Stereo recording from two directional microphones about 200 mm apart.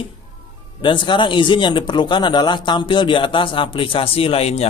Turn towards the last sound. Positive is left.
turn(degrees=30)  # may be behind; listen again after turning